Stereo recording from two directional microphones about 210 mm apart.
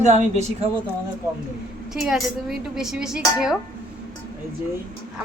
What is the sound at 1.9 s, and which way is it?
A woman's voice, centre (ahead or behind).